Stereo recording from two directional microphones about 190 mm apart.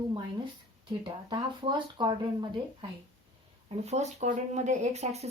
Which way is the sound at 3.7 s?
35° right (ahead or behind).